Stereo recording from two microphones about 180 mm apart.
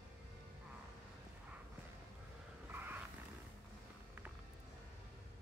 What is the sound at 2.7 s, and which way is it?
Vehicle, 10° right (ahead or behind).